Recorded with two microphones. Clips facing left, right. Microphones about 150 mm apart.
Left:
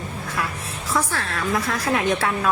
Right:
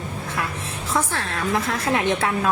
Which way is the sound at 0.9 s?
25° right (ahead or behind).